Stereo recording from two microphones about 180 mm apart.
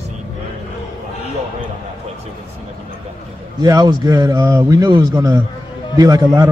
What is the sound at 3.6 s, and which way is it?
Speech, 20° right (ahead or behind).